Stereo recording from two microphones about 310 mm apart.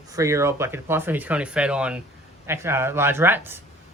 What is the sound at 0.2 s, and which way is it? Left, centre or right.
Speech, centre.